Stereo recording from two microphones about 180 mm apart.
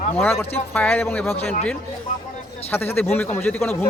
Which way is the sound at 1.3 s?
40° left (ahead or behind).